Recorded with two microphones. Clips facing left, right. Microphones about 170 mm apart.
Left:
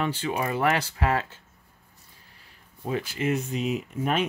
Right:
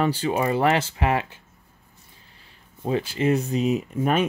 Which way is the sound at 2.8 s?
30° right (ahead or behind).